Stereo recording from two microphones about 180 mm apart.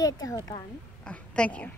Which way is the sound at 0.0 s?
20° left (ahead or behind).